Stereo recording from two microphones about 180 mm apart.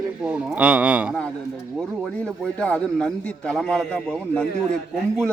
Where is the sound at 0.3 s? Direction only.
5° right (ahead or behind).